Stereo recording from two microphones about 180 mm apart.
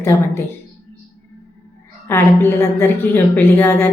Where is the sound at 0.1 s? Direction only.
15° left (ahead or behind).